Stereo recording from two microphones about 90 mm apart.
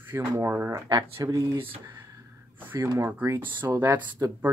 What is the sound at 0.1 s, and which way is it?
Speech, 30° right (ahead or behind).